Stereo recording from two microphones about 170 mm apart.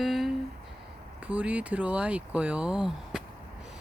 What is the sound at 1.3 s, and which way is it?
Speech, 10° right (ahead or behind).